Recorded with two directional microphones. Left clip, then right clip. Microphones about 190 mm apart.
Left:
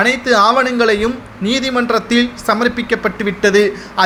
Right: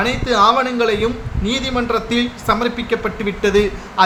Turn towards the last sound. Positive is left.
turn(degrees=25)  # may be behind; listen again after turning